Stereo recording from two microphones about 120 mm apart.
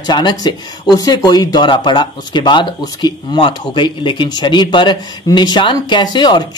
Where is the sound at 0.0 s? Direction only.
35° left (ahead or behind).